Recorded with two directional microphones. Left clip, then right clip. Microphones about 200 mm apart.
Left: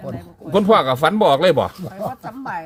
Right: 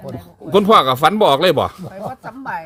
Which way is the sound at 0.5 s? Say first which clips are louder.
Right 3 dB; 35° right (ahead or behind).